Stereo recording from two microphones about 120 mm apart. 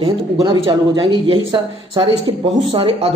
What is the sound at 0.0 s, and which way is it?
Speech, 45° right (ahead or behind).